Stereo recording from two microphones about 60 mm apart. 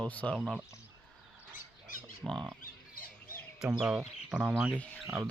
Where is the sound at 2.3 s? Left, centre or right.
Centre.